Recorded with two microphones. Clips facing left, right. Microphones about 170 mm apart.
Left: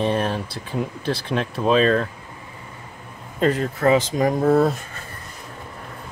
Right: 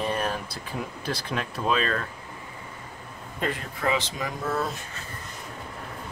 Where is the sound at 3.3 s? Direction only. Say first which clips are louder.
Left 10 dB; 40° left (ahead or behind).